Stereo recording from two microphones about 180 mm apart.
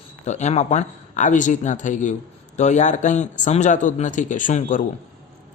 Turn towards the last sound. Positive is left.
turn(degrees=45)  # may be behind; listen again after turning